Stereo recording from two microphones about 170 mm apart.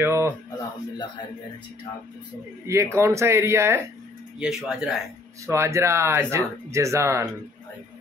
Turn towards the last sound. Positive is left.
turn(degrees=-15)  # may be behind; listen again after turning